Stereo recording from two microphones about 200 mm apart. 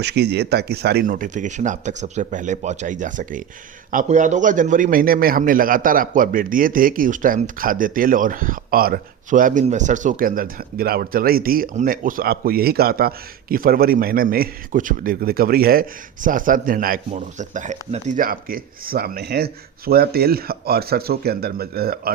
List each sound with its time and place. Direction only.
0.0 s a man's voice: 55° right (ahead or behind)